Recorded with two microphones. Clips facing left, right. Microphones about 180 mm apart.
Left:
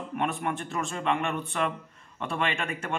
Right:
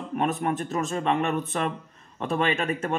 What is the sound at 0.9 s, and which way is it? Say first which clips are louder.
Speech: right 3 dB; 25° right (ahead or behind).